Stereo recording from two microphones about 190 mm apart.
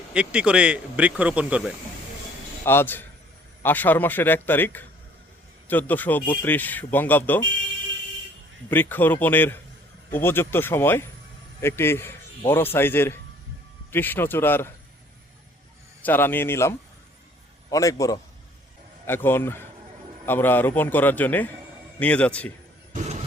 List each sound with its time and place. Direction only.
0.1 s a man's voice: 5° right (ahead or behind)
2.6 s a man's voice: 10° left (ahead or behind)
8.7 s a man's voice: 10° left (ahead or behind)
16.0 s a man's voice: 10° left (ahead or behind)